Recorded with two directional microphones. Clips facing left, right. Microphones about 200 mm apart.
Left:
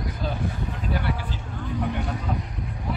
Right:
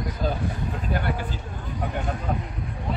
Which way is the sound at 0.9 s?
50° right (ahead or behind).